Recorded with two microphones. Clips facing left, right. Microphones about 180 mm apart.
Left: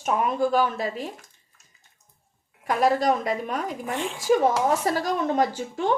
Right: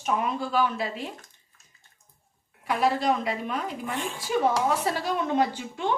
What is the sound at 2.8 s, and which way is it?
Speech, 45° left (ahead or behind).